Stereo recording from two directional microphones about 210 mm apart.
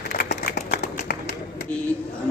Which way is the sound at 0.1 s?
45° left (ahead or behind).